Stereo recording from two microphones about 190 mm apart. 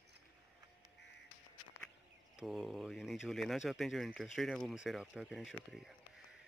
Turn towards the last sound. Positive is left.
turn(degrees=0)  # may be behind; listen again after turning